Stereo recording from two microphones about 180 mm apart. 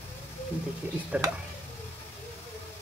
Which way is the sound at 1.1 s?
5° right (ahead or behind).